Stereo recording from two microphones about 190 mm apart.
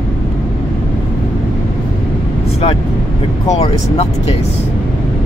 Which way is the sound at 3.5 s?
30° left (ahead or behind).